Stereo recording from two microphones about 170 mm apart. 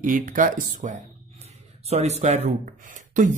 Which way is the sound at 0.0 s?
50° right (ahead or behind).